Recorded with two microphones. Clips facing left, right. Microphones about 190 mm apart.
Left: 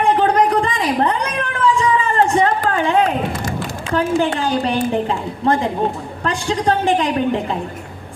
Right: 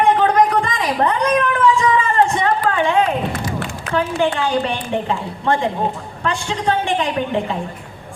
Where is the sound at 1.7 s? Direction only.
35° left (ahead or behind).